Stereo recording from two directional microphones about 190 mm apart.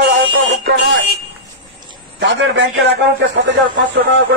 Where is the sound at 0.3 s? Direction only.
70° right (ahead or behind).